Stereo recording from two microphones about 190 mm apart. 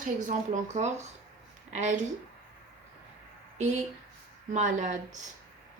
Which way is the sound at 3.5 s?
35° right (ahead or behind).